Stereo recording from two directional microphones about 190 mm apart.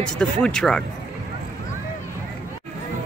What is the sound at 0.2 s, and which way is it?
Speech, 5° left (ahead or behind).